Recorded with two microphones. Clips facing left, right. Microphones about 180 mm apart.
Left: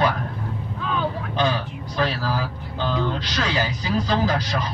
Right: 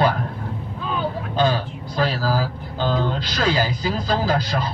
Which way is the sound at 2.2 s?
35° right (ahead or behind).